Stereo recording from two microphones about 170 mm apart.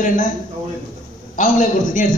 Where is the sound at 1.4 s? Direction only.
50° left (ahead or behind).